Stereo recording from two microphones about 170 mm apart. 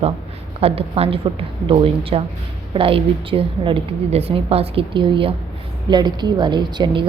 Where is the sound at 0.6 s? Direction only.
35° right (ahead or behind).